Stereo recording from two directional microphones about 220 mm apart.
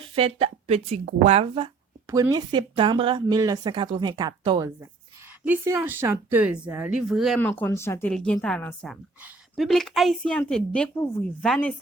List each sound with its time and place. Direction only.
0.0 s speech: 25° right (ahead or behind)
2.0 s speech: 15° right (ahead or behind); by 11.8 s 5° left (ahead or behind)